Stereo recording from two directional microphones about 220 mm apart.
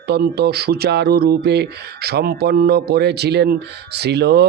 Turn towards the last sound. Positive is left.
turn(degrees=-50)  # may be behind; listen again after turning